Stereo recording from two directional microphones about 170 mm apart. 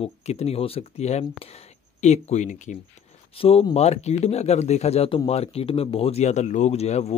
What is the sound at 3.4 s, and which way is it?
Speech, 35° left (ahead or behind).